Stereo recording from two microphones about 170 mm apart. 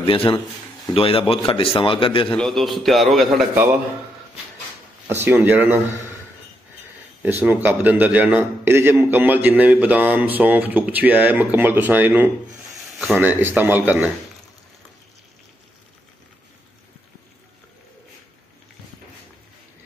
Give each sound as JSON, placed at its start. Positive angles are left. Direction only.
{"t": 0.0, "sound": "a man's voice", "side_deg": 30}
{"t": 2.2, "sound": "a man's voice", "side_deg": 5}
{"t": 5.0, "sound": "a man's voice", "side_deg": -15}
{"t": 7.2, "sound": "a man's voice", "side_deg": -10}